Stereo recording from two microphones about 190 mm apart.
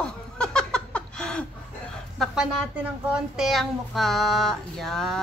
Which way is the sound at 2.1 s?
5° right (ahead or behind).